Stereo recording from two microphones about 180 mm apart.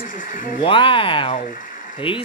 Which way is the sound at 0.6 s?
30° left (ahead or behind).